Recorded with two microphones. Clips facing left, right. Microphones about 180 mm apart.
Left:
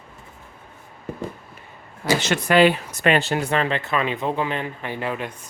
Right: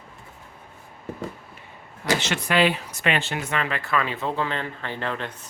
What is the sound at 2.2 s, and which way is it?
Speech, 45° left (ahead or behind).